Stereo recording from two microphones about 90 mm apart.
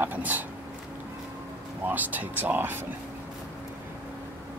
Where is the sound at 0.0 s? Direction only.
20° right (ahead or behind).